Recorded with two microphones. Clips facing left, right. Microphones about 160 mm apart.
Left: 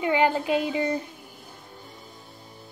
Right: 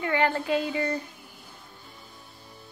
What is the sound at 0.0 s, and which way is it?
Speech, 15° left (ahead or behind).